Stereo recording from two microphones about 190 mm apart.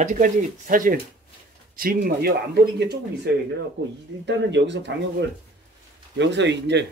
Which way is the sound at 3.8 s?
75° right (ahead or behind).